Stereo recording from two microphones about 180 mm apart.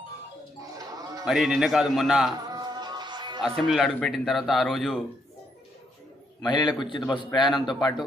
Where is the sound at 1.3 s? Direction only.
Centre (ahead or behind).